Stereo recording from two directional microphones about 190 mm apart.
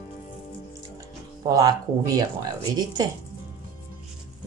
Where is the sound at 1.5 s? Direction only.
20° right (ahead or behind).